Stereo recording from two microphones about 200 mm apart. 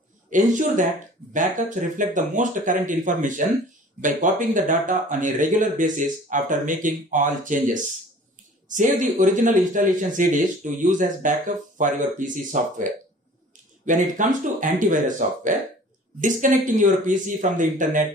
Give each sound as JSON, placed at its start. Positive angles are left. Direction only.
{"t": 0.3, "sound": "speech", "side_deg": -40}
{"t": 13.8, "sound": "speech", "side_deg": -40}